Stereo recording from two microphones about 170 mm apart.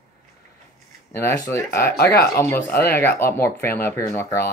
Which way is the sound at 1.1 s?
15° left (ahead or behind).